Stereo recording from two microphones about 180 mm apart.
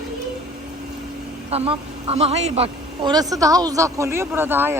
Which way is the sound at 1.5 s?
35° right (ahead or behind).